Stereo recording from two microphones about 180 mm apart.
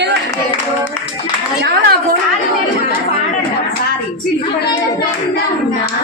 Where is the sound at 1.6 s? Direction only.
60° right (ahead or behind).